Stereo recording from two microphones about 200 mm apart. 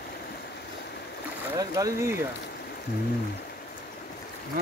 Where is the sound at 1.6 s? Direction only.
15° right (ahead or behind).